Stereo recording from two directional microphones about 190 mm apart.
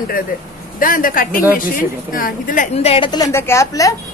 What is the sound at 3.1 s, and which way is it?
Speech, 15° left (ahead or behind).